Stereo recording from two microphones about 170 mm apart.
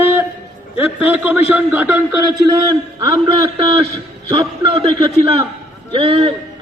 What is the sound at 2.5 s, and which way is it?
A man's voice, 25° right (ahead or behind).